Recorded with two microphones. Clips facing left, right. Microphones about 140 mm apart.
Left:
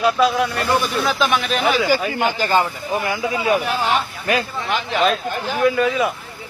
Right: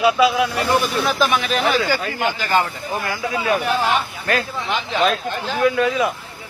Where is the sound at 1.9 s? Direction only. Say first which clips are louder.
Left 3 dB; 15° left (ahead or behind).